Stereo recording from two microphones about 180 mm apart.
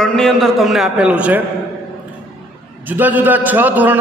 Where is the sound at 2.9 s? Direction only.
10° right (ahead or behind).